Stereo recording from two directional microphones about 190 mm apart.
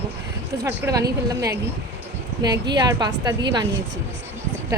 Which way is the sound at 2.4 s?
20° right (ahead or behind).